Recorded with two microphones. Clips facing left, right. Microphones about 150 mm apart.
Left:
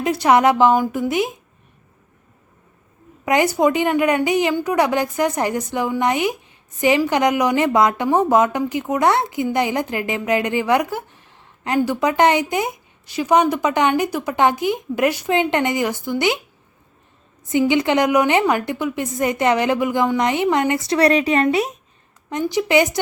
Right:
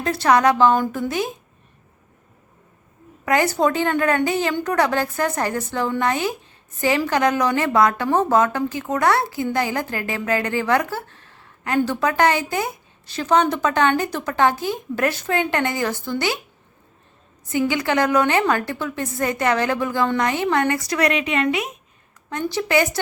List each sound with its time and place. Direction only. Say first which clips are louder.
0.0 s a woman's voice: left 2 dB; 20° left (ahead or behind)
0.7 s a woman's voice: left 2 dB; 10° left (ahead or behind)
1.0 s a woman's voice: left 3 dB; 20° left (ahead or behind)
3.2 s a woman's voice: left 2 dB; 15° left (ahead or behind)
17.5 s a woman's voice: left 4 dB; 20° left (ahead or behind); by 21.8 s 35° left (ahead or behind)
22.3 s a woman's voice: left 3 dB; 15° left (ahead or behind)